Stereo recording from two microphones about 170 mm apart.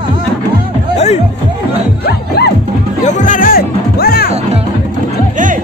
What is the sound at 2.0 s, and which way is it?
Music, 75° left (ahead or behind).